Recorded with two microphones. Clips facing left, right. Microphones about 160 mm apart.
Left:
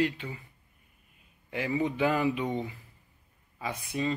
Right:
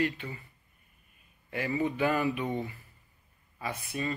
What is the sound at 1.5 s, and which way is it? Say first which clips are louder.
A man's voice: left 1 dB; 15° left (ahead or behind).